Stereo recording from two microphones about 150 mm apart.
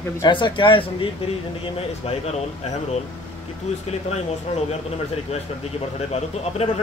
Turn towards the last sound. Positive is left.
turn(degrees=45)  # may be behind; listen again after turning